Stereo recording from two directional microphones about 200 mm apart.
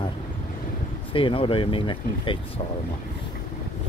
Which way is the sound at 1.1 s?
25° left (ahead or behind).